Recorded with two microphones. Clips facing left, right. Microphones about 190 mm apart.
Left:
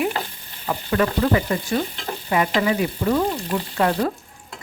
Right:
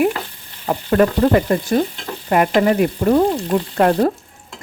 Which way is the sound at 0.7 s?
45° right (ahead or behind).